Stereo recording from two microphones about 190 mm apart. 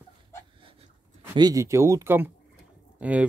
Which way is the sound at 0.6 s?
30° right (ahead or behind).